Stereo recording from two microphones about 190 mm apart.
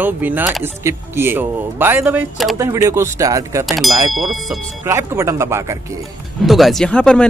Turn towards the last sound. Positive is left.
turn(degrees=5)  # may be behind; listen again after turning